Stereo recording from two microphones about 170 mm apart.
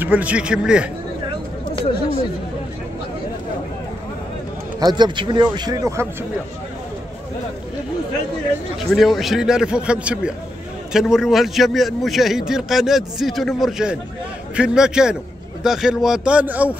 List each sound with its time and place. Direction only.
0.0 s speech: 10° right (ahead or behind)
4.7 s speech: 25° right (ahead or behind)
8.9 s a man's voice: centre (ahead or behind)